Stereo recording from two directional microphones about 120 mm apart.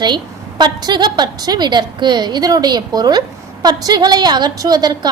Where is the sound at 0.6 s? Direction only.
35° right (ahead or behind).